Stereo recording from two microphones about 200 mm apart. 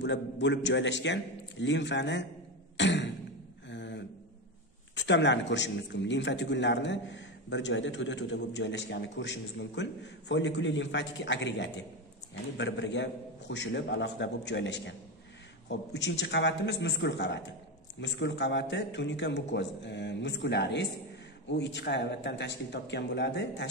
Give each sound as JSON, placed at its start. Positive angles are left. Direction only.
{"t": 0.0, "sound": "a man's voice", "side_deg": 65}
{"t": 2.8, "sound": "beatboxing", "side_deg": 60}
{"t": 3.6, "sound": "a sound", "side_deg": 60}
{"t": 4.9, "sound": "a man's voice", "side_deg": 60}